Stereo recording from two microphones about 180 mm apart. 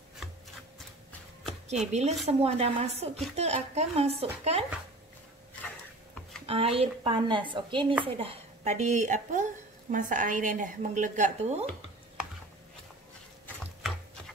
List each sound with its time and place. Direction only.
1.7 s speech: 40° right (ahead or behind)
6.4 s a woman's voice: 35° right (ahead or behind)